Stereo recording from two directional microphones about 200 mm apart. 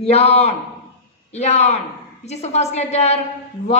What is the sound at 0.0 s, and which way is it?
A woman's voice, 30° left (ahead or behind).